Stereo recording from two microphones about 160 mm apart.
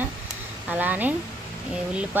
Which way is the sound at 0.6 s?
10° right (ahead or behind).